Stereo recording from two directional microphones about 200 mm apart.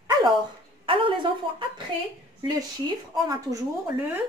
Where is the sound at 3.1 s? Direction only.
20° right (ahead or behind).